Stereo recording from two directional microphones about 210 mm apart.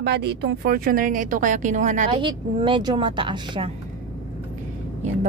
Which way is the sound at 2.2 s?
25° right (ahead or behind).